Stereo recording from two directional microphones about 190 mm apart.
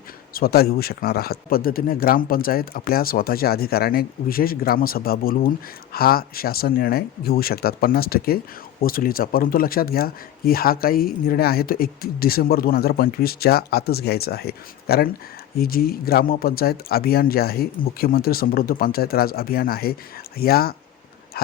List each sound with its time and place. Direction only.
0.3 s speech: 55° left (ahead or behind)